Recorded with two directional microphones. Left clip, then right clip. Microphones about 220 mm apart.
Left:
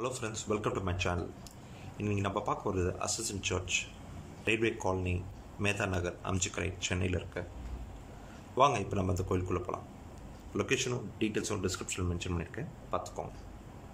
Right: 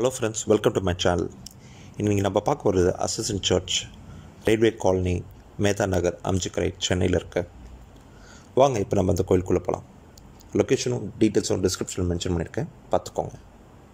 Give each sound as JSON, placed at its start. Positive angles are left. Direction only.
{"t": 0.0, "sound": "speech", "side_deg": -30}
{"t": 8.5, "sound": "speech", "side_deg": -25}